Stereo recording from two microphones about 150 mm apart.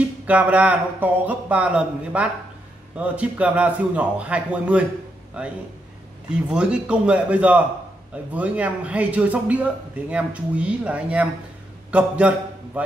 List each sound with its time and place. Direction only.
0.3 s a man's voice: 10° right (ahead or behind)